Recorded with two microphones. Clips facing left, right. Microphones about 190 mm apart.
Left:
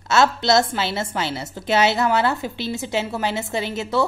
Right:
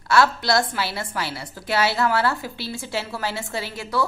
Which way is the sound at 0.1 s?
20° left (ahead or behind).